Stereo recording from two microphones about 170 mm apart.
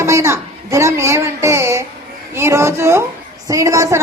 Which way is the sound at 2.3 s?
15° right (ahead or behind).